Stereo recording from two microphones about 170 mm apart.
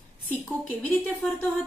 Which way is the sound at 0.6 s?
10° left (ahead or behind).